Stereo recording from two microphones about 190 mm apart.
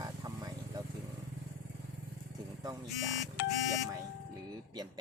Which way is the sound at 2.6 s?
20° right (ahead or behind).